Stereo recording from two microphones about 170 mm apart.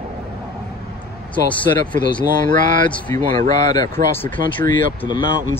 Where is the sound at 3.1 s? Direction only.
15° left (ahead or behind).